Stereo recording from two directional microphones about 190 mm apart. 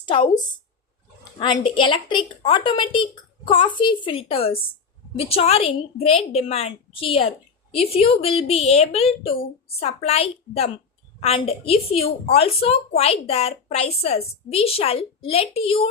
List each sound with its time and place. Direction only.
0.1 s a woman's voice: 25° left (ahead or behind)